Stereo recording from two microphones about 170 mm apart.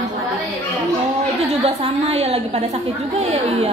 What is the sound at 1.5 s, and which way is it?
A woman's voice, 40° right (ahead or behind).